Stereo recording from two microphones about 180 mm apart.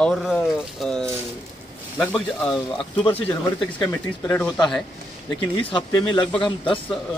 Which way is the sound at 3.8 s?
15° left (ahead or behind).